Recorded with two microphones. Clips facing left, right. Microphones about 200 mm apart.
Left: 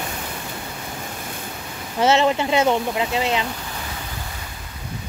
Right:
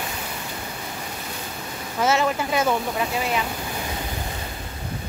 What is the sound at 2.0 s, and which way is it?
Speech, 25° left (ahead or behind).